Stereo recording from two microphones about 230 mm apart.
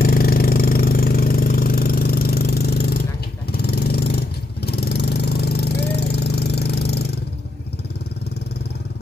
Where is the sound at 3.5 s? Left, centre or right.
Left.